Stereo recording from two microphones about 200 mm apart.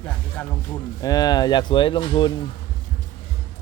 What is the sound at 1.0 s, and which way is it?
Speech, 20° left (ahead or behind).